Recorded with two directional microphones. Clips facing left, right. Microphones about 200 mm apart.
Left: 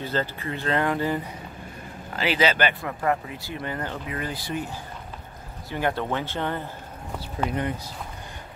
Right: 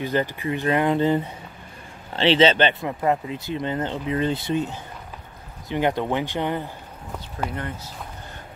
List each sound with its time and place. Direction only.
0.0 s speech: 15° right (ahead or behind)
7.4 s speech: 15° left (ahead or behind)